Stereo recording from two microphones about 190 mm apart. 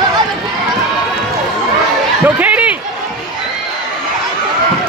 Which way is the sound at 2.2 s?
10° right (ahead or behind).